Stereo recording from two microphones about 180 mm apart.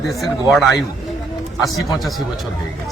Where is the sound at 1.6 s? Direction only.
Centre (ahead or behind).